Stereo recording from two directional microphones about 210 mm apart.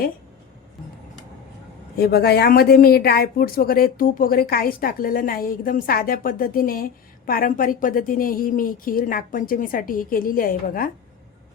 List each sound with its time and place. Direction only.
2.0 s speech: 50° left (ahead or behind)